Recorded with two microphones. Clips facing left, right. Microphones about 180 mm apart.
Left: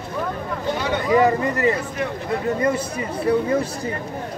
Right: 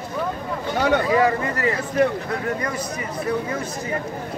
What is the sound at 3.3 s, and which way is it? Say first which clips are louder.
Speech: left 5 dB; 30° left (ahead or behind).